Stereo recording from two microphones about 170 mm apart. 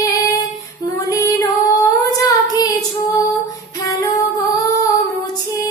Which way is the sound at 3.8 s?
20° left (ahead or behind).